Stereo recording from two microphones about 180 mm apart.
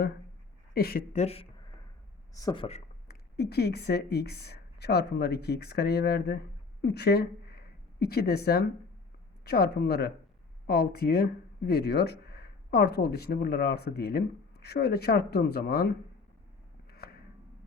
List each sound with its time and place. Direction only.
0.7 s speech: 55° left (ahead or behind)
1.1 s speech: 35° left (ahead or behind)
2.3 s speech: 20° left (ahead or behind)
3.1 s a woman's voice: 65° left (ahead or behind)